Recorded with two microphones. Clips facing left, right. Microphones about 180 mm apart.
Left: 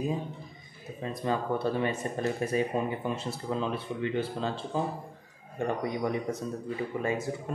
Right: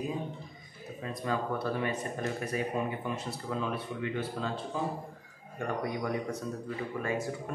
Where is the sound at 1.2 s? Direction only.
25° left (ahead or behind).